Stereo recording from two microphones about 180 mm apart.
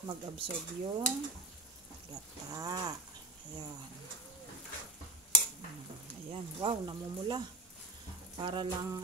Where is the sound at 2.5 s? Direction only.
20° right (ahead or behind).